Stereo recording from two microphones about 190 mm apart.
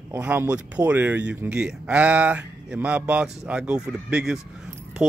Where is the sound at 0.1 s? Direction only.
10° right (ahead or behind).